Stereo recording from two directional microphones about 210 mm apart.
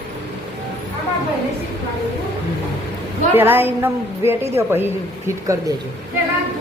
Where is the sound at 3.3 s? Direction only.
10° right (ahead or behind).